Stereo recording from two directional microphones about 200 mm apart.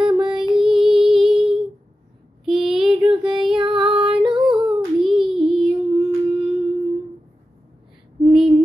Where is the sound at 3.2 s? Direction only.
25° right (ahead or behind).